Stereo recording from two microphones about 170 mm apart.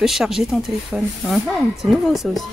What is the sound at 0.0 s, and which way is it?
Speech, 5° right (ahead or behind).